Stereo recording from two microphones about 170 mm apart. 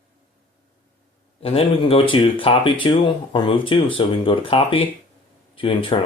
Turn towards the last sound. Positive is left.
turn(degrees=30)  # may be behind; listen again after turning